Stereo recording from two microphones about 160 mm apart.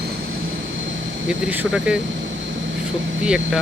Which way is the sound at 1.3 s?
5° right (ahead or behind).